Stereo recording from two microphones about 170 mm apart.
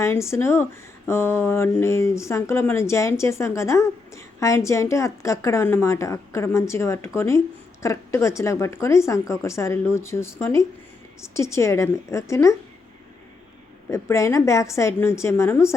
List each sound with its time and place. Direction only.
0.0 s speech: 15° left (ahead or behind)
13.9 s speech: 15° left (ahead or behind)